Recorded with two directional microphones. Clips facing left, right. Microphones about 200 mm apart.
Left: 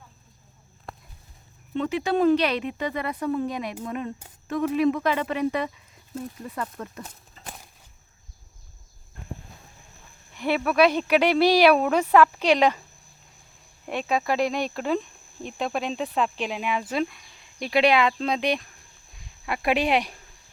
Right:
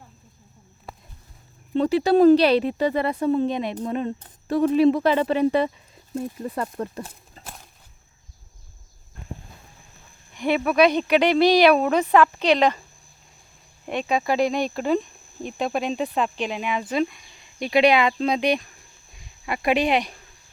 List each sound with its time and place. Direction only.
1.7 s speech: 35° right (ahead or behind)
7.4 s a sound: centre (ahead or behind)
10.3 s speech: 5° left (ahead or behind)
13.8 s speech: centre (ahead or behind)